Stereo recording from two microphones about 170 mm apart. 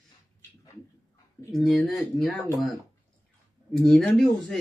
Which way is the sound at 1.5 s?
Centre (ahead or behind).